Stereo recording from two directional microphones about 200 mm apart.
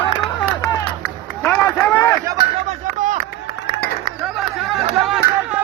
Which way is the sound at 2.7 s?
40° right (ahead or behind).